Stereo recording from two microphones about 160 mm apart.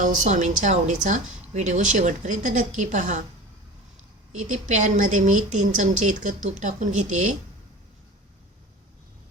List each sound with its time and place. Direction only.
0.0 s a woman's voice: 50° right (ahead or behind)
4.3 s a woman's voice: 50° right (ahead or behind)